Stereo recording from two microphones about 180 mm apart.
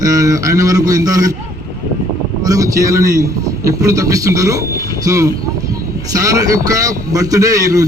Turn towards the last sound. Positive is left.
turn(degrees=-20)  # may be behind; listen again after turning